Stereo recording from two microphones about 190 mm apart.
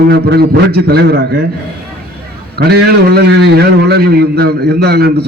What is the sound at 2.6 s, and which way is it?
A man's voice, 55° right (ahead or behind).